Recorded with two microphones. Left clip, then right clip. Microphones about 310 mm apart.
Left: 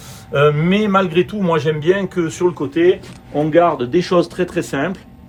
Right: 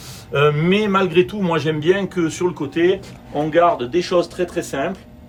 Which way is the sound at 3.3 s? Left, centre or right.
Centre.